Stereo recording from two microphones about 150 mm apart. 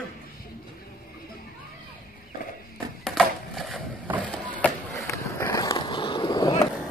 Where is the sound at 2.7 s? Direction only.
Centre (ahead or behind).